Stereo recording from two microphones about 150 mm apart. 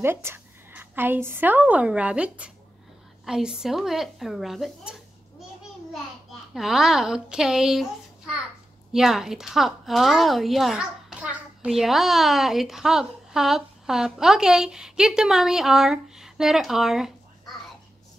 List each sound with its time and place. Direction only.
0.0 s a woman's voice: 15° right (ahead or behind)
6.5 s a woman's voice: 5° right (ahead or behind)
8.9 s a woman's voice: 5° right (ahead or behind)